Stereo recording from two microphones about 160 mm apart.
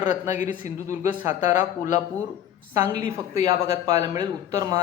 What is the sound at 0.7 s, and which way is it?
Speech, 20° right (ahead or behind).